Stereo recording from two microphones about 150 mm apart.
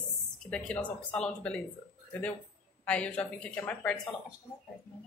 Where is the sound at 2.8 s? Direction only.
10° left (ahead or behind).